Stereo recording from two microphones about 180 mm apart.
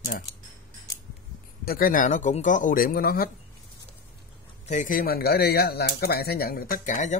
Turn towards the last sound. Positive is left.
turn(degrees=45)  # may be behind; listen again after turning